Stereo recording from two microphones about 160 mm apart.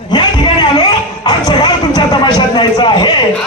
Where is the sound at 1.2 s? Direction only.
25° left (ahead or behind).